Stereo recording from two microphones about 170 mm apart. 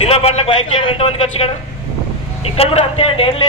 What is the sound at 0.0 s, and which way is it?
A man's voice, 35° left (ahead or behind).